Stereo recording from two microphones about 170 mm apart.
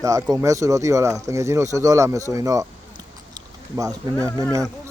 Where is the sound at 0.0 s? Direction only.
20° right (ahead or behind).